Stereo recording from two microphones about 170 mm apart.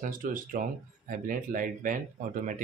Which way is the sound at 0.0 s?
55° right (ahead or behind).